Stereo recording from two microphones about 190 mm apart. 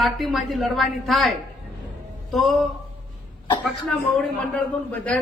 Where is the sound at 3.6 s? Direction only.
Centre (ahead or behind).